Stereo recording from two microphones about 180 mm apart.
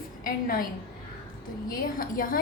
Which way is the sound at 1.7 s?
50° left (ahead or behind).